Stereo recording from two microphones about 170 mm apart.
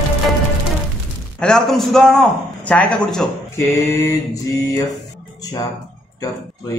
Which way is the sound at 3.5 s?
20° left (ahead or behind).